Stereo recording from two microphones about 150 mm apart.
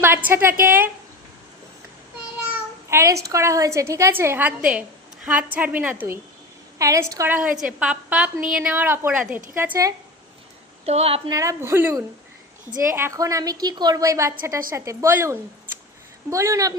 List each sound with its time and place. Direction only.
0.0 s a woman's voice: 15° right (ahead or behind)
2.9 s a woman's voice: 20° right (ahead or behind)
7.3 s a woman's voice: 5° right (ahead or behind)
10.8 s a woman's voice: 40° right (ahead or behind)
11.3 s a woman's voice: 20° right (ahead or behind)